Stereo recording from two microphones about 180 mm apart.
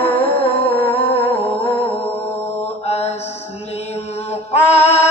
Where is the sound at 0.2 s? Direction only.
30° left (ahead or behind).